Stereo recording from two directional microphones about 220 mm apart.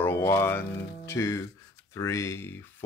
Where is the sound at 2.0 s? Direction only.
15° left (ahead or behind).